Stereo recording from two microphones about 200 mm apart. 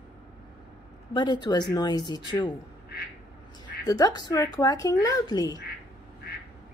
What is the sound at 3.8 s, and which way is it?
Speech, 15° left (ahead or behind).